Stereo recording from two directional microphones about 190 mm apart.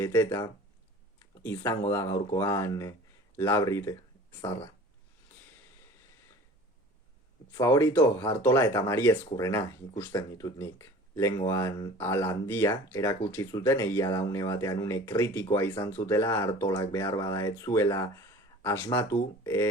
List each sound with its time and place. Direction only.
0.0 s speech: 15° left (ahead or behind)
7.5 s speech: 15° left (ahead or behind)